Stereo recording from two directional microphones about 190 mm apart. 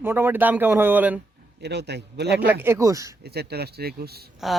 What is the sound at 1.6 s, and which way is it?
Speech, 60° right (ahead or behind).